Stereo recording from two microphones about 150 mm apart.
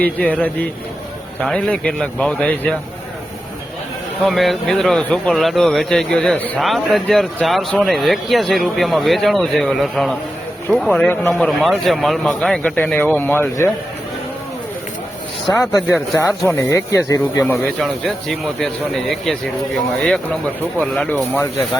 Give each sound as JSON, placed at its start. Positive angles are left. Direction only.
{"t": 0.0, "sound": "speech", "side_deg": 10}
{"t": 4.2, "sound": "speech", "side_deg": 0}
{"t": 11.1, "sound": "speech", "side_deg": 15}
{"t": 11.3, "sound": "speech", "side_deg": 0}
{"t": 15.5, "sound": "speech", "side_deg": 20}
{"t": 18.3, "sound": "speech", "side_deg": 0}
{"t": 20.7, "sound": "speech", "side_deg": 5}